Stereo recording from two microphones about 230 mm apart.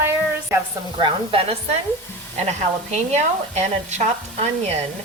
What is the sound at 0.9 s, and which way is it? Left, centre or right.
Speech, right.